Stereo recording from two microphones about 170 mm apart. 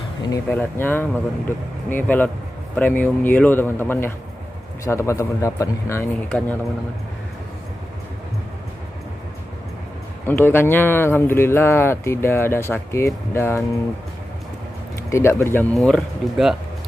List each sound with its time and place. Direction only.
0.5 s speech: 10° left (ahead or behind)
10.2 s speech: 10° left (ahead or behind)
15.0 s speech: 15° left (ahead or behind)
15.7 s speech: centre (ahead or behind)